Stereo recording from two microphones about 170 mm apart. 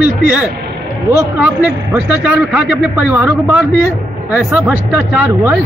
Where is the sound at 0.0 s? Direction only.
5° right (ahead or behind).